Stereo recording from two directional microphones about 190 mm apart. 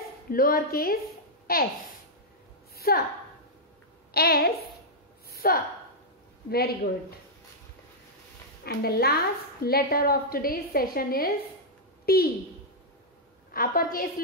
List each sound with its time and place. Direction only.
0.3 s a woman's voice: 50° left (ahead or behind)
2.7 s a sound: 55° left (ahead or behind)
4.1 s a woman's voice: 55° left (ahead or behind)
5.3 s a sound: 50° left (ahead or behind)
6.5 s a woman's voice: 55° left (ahead or behind)
8.6 s a woman's voice: 55° left (ahead or behind)
13.5 s a woman's voice: 50° left (ahead or behind)